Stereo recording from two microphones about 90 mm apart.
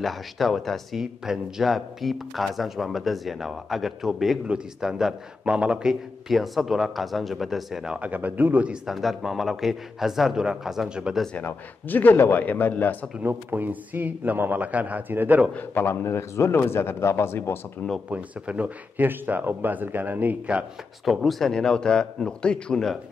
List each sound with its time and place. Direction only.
0.0 s speech: centre (ahead or behind); by 8.7 s 15° right (ahead or behind)
8.8 s speech: centre (ahead or behind)
11.3 s speech: 20° left (ahead or behind)
13.2 s speech: 25° right (ahead or behind)
15.5 s speech: 20° left (ahead or behind)
18.1 s speech: 15° right (ahead or behind)
21.0 s speech: centre (ahead or behind)